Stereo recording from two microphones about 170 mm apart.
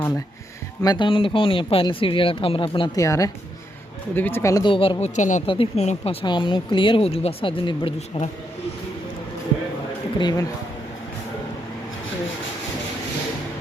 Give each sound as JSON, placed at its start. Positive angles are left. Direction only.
{"t": 0.8, "sound": "speech", "side_deg": 25}
{"t": 4.7, "sound": "speech", "side_deg": 30}
{"t": 6.2, "sound": "speech", "side_deg": 30}
{"t": 10.2, "sound": "speech", "side_deg": 25}